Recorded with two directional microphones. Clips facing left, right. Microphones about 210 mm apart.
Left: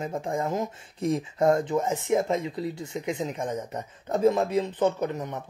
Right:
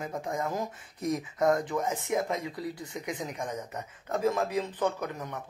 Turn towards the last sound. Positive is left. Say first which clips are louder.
# left 6 dB
turn(degrees=20)  # may be behind; listen again after turning